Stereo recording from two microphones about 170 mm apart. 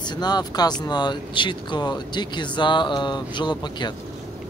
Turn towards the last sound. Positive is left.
turn(degrees=25)  # may be behind; listen again after turning